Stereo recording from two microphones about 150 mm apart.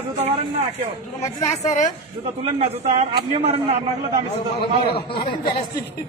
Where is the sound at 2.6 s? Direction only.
45° right (ahead or behind).